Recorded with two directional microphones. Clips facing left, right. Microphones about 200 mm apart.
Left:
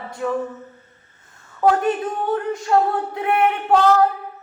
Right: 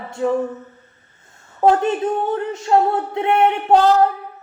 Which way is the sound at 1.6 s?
25° right (ahead or behind).